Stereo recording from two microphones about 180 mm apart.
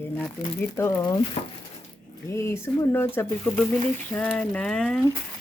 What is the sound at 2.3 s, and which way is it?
Speech, 15° left (ahead or behind).